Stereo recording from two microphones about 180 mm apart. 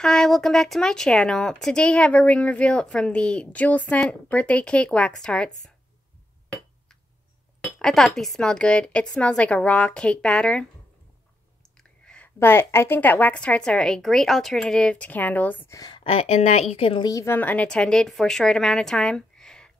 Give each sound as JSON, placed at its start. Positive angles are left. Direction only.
{"t": 0.0, "sound": "speech", "side_deg": 0}
{"t": 7.6, "sound": "speech", "side_deg": 0}
{"t": 11.7, "sound": "a woman's voice", "side_deg": 5}
{"t": 15.8, "sound": "a woman's voice", "side_deg": 30}
{"t": 17.1, "sound": "speech", "side_deg": 15}